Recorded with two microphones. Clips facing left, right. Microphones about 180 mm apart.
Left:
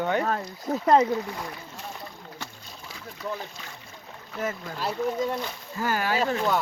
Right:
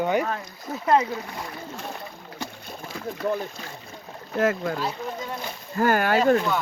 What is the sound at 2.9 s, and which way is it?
Speech, 55° right (ahead or behind).